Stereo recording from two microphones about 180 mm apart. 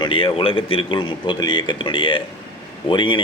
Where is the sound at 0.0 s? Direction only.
30° left (ahead or behind).